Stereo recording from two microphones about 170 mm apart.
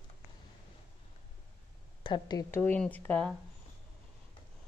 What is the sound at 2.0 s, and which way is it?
Speech, 25° left (ahead or behind).